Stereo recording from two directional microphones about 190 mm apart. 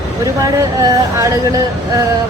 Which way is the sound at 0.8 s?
15° right (ahead or behind).